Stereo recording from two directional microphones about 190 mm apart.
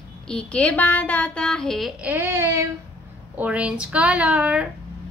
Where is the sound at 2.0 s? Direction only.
10° right (ahead or behind).